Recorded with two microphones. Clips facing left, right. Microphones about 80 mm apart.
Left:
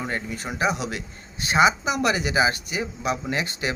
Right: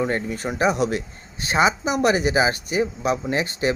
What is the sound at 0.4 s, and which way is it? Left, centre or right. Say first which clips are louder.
Speech: right 5 dB; right.